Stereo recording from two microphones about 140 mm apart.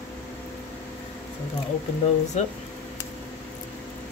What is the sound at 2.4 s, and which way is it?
Speech, 55° left (ahead or behind).